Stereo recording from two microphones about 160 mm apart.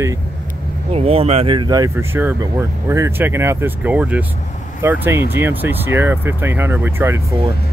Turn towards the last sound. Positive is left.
turn(degrees=-15)  # may be behind; listen again after turning